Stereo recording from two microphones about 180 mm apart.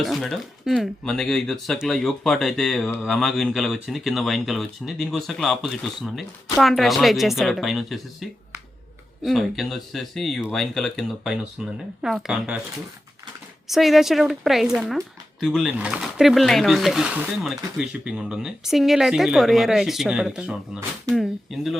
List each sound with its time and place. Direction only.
0.0 s speech: centre (ahead or behind)
13.7 s speech: centre (ahead or behind)